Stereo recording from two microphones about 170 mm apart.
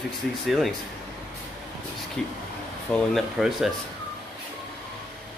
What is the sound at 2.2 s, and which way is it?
Speech, 5° left (ahead or behind).